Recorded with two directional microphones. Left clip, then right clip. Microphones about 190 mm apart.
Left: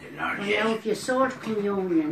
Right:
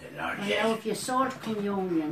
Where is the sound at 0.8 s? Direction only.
30° right (ahead or behind).